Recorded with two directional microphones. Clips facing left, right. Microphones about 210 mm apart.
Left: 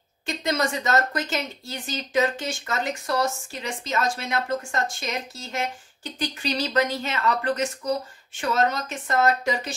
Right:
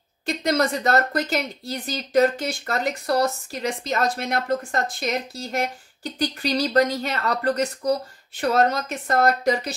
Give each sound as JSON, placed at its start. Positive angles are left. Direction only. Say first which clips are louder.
{"t": 0.4, "sound": "speech", "louder": "right 4 dB", "side_deg": -35}